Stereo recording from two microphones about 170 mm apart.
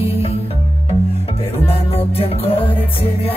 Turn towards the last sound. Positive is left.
turn(degrees=35)  # may be behind; listen again after turning